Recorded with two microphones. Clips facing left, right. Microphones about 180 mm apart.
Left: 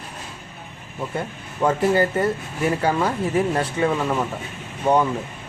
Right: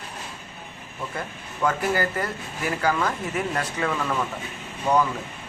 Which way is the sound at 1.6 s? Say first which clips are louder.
Left 5 dB; 25° left (ahead or behind).